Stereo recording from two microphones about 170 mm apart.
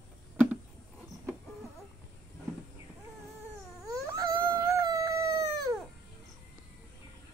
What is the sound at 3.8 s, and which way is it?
Dog, 20° right (ahead or behind).